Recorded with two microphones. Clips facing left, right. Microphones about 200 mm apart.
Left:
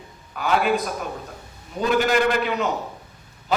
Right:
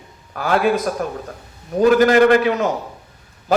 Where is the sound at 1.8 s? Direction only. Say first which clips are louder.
Right 8 dB; 55° right (ahead or behind).